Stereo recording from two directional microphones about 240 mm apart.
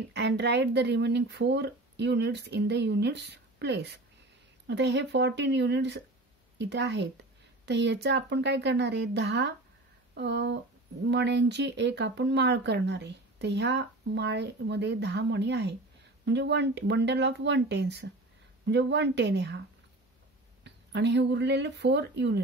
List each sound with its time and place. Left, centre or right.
0.1 s speech: right
20.6 s speech: right